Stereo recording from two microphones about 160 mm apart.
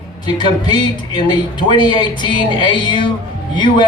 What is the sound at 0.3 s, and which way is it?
Speech, 30° left (ahead or behind).